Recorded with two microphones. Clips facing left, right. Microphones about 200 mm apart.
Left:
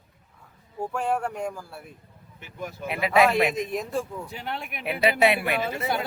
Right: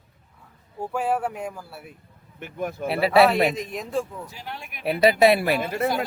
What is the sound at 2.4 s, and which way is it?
Speech, 55° right (ahead or behind).